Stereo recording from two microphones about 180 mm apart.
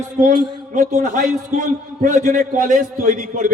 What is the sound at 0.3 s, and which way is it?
Speech, 25° right (ahead or behind).